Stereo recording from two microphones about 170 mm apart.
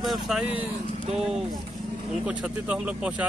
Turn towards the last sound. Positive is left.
turn(degrees=-5)  # may be behind; listen again after turning